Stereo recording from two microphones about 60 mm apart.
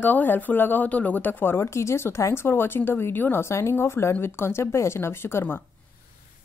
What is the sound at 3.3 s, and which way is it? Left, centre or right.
Speech, left.